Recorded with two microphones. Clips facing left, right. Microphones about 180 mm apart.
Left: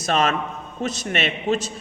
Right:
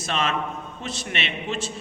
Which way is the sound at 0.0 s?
40° left (ahead or behind).